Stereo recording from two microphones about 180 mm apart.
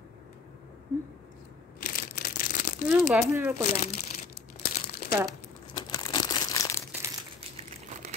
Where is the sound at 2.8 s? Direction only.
10° right (ahead or behind).